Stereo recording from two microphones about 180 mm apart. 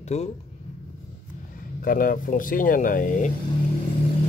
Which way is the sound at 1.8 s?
50° left (ahead or behind).